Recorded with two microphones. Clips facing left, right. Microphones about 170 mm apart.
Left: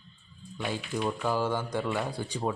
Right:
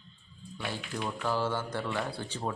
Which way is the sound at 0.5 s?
15° left (ahead or behind).